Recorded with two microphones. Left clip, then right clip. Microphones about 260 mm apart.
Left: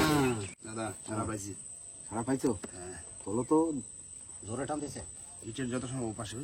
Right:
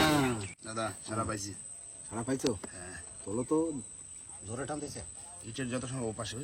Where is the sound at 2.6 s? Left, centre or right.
Centre.